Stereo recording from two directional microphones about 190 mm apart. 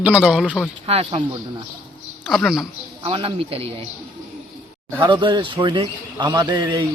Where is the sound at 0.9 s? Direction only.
30° right (ahead or behind).